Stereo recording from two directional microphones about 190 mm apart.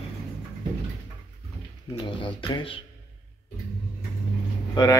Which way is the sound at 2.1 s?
25° left (ahead or behind).